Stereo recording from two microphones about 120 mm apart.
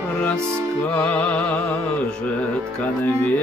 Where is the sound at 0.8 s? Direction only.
10° left (ahead or behind).